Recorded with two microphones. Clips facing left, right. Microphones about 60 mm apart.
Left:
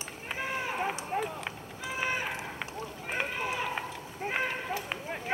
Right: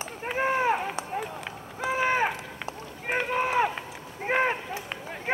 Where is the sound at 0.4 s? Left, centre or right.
Right.